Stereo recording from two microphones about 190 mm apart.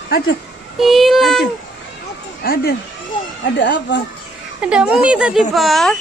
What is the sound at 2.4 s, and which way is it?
Speech, 50° left (ahead or behind).